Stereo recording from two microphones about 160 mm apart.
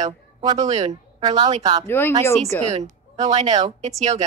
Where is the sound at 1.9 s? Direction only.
15° left (ahead or behind).